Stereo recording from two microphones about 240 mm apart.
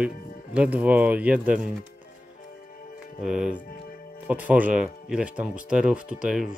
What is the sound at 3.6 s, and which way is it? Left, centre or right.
Speech, left.